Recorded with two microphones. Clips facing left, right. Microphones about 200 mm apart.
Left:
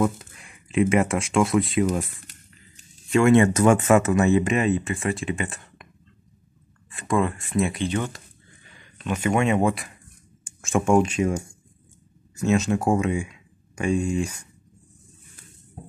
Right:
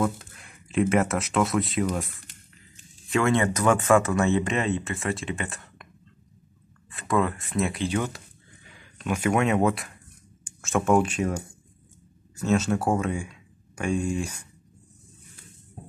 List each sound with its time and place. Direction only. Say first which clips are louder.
0.0 s speech: left 3 dB; centre (ahead or behind)
3.1 s speech: left 6 dB; centre (ahead or behind)
3.5 s speech: left 3 dB; 20° left (ahead or behind)
4.4 s speech: left 4 dB; centre (ahead or behind)
6.9 s speech: left 1 dB; centre (ahead or behind)
8.8 s a sound: even; 5° right (ahead or behind)
9.5 s speech: left 1 dB; 10° left (ahead or behind)
10.4 s a sound: left 2 dB; centre (ahead or behind)
11.1 s speech: left 4 dB; 10° left (ahead or behind)